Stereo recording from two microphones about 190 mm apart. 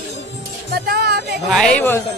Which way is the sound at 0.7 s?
55° right (ahead or behind).